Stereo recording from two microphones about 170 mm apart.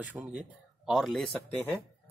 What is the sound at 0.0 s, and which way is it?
Speech, 10° right (ahead or behind).